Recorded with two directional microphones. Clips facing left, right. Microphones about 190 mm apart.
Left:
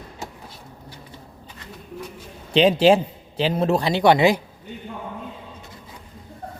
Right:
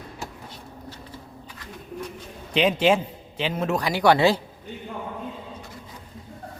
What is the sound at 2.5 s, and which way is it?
A man's voice, 30° left (ahead or behind).